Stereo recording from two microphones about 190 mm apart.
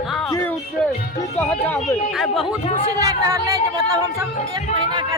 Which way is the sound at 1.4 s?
10° left (ahead or behind).